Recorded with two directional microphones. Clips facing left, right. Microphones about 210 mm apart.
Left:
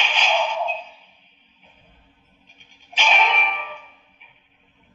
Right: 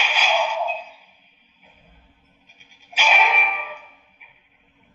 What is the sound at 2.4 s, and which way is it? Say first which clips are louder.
Music: left 1 dB; 5° right (ahead or behind).